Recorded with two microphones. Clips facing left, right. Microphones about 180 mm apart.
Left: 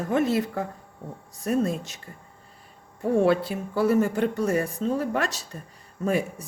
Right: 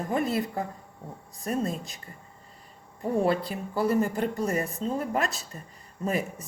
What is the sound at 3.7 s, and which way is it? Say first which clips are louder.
A woman's voice: left 3 dB; 70° left (ahead or behind).